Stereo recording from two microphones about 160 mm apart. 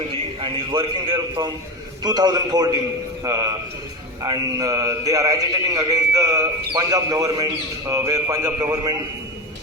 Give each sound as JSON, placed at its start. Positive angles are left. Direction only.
{"t": 0.1, "sound": "a man's voice", "side_deg": -30}